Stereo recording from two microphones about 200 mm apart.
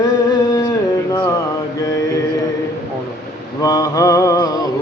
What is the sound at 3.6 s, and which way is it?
Mantra, 15° left (ahead or behind).